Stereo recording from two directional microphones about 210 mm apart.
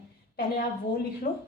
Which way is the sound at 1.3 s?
45° left (ahead or behind).